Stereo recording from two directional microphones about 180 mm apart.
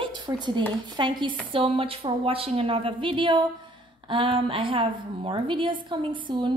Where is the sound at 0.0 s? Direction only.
25° right (ahead or behind).